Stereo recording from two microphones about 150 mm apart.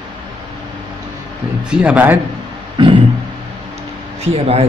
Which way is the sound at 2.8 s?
30° right (ahead or behind).